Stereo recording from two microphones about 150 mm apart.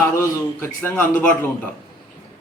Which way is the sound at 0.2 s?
15° left (ahead or behind).